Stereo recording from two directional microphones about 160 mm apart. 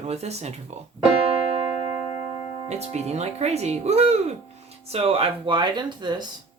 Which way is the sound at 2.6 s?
45° right (ahead or behind).